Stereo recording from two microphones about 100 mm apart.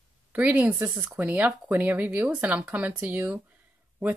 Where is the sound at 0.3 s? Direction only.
15° right (ahead or behind).